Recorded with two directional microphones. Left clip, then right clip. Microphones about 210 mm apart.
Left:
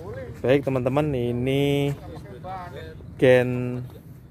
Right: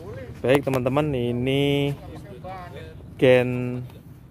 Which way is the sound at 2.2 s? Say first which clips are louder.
Left 2 dB; 50° right (ahead or behind).